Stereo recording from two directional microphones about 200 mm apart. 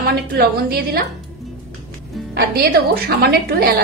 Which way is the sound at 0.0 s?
50° right (ahead or behind).